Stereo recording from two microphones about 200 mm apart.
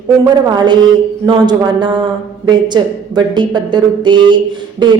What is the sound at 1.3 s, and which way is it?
A woman's voice, 20° right (ahead or behind).